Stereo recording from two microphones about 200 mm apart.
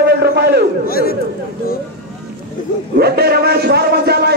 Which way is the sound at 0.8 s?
50° left (ahead or behind).